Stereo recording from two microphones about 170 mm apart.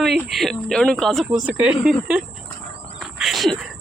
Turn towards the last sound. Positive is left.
turn(degrees=0)  # may be behind; listen again after turning